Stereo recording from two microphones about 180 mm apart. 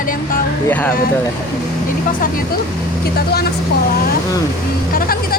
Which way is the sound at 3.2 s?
60° left (ahead or behind).